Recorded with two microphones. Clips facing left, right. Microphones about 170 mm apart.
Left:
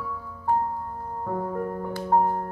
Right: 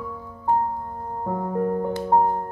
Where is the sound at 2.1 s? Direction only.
25° right (ahead or behind).